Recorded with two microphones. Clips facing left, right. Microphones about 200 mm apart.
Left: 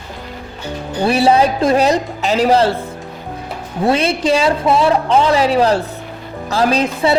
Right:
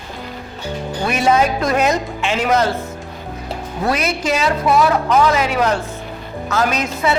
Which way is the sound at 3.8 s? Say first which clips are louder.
Left 5 dB; 30° left (ahead or behind).